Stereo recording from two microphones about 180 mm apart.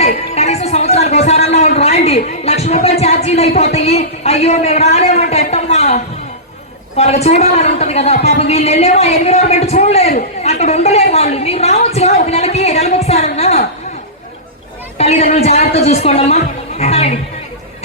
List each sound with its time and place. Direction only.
0.0 s music: 35° left (ahead or behind)
2.0 s a man's voice: 35° left (ahead or behind)
14.9 s a man's voice: 35° left (ahead or behind)